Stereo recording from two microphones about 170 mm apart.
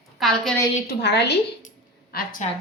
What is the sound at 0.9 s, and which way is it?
Speech, 80° left.